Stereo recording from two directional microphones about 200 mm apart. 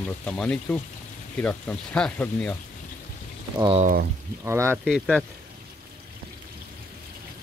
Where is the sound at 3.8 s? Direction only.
45° right (ahead or behind).